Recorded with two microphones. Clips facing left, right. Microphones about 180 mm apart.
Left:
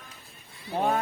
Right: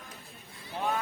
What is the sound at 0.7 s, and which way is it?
Speech, 50° left (ahead or behind).